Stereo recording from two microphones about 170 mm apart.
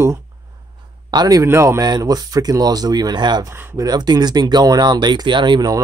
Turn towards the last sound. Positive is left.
turn(degrees=-25)  # may be behind; listen again after turning